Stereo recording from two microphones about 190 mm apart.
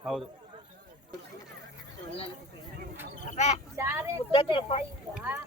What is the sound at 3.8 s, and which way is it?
Speech, 10° right (ahead or behind).